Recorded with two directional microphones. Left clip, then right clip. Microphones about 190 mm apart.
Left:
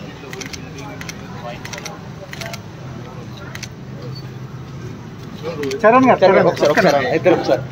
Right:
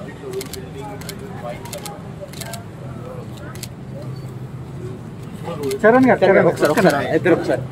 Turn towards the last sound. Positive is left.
turn(degrees=-25)  # may be behind; listen again after turning